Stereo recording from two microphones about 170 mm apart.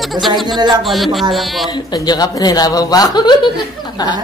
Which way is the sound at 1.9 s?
25° left (ahead or behind).